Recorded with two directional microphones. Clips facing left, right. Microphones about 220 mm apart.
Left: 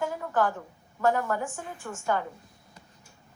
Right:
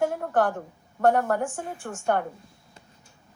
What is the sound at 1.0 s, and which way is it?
A woman's voice, 55° right (ahead or behind).